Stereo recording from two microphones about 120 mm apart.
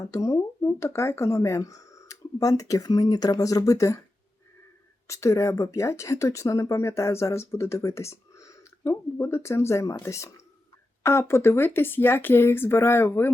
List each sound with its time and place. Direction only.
0.0 s speech: 30° left (ahead or behind)
5.0 s speech: 25° left (ahead or behind)